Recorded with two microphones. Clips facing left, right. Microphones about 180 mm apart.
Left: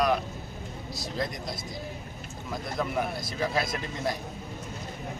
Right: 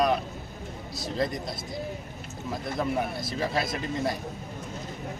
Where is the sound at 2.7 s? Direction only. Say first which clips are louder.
Right 1 dB; 25° right (ahead or behind).